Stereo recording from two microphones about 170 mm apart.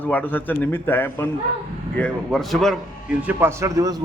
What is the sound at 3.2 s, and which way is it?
Speech, 15° right (ahead or behind).